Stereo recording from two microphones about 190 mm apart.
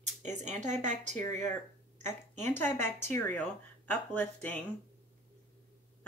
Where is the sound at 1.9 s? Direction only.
40° right (ahead or behind).